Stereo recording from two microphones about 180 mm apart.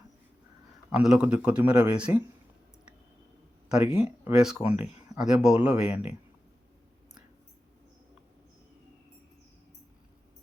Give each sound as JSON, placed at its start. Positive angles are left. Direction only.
{"t": 0.9, "sound": "speech", "side_deg": -5}
{"t": 3.8, "sound": "speech", "side_deg": 30}
{"t": 4.0, "sound": "speech", "side_deg": -5}